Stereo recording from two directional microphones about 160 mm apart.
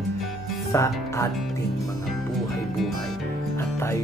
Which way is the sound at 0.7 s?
20° left (ahead or behind).